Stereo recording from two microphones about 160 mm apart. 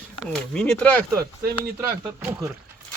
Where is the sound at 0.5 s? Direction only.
5° left (ahead or behind).